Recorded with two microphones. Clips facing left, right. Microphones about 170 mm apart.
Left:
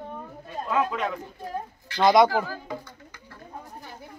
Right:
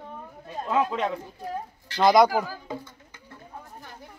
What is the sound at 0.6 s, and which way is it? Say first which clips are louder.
Speech: right 1 dB; 25° right (ahead or behind).